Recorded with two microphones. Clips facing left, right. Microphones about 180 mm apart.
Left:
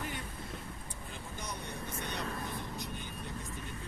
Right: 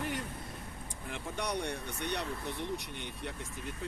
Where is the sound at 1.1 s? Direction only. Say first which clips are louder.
Right 9 dB; 75° right (ahead or behind).